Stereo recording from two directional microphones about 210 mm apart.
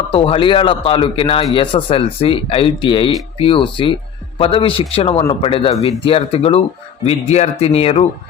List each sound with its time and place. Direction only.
0.1 s speech: 25° left (ahead or behind)